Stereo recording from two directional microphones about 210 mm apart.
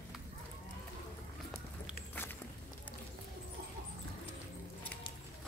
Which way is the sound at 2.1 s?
10° left (ahead or behind).